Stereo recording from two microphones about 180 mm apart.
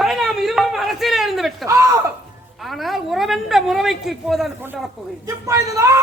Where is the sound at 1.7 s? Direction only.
15° right (ahead or behind).